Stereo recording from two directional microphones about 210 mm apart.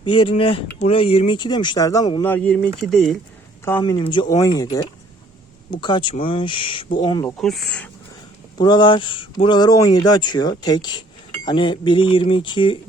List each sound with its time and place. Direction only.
0.2 s speech: 25° left (ahead or behind); by 3.2 s centre (ahead or behind)
3.6 s speech: 15° left (ahead or behind)
7.3 s speech: centre (ahead or behind)
8.5 s speech: 20° left (ahead or behind)